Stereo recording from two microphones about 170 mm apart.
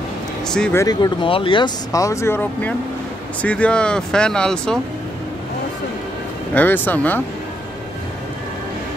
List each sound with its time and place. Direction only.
0.5 s speech: 5° left (ahead or behind)
0.7 s speech: 20° left (ahead or behind); by 4.7 s 5° left (ahead or behind)
6.5 s speech: 10° left (ahead or behind)